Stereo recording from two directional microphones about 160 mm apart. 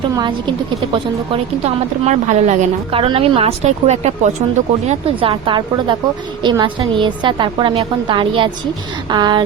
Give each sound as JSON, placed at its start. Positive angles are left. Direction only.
{"t": 0.9, "sound": "a woman's voice", "side_deg": -40}
{"t": 2.9, "sound": "speech", "side_deg": -35}